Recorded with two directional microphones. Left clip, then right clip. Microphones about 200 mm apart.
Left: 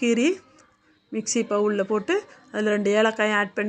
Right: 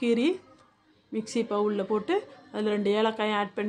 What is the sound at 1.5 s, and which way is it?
Speech, 10° left (ahead or behind).